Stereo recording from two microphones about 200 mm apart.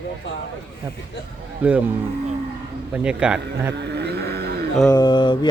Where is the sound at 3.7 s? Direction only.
55° right (ahead or behind).